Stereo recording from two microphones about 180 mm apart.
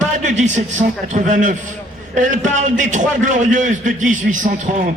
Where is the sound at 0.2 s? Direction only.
45° right (ahead or behind).